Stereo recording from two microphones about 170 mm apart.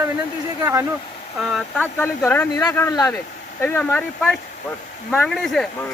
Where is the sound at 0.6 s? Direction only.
15° right (ahead or behind).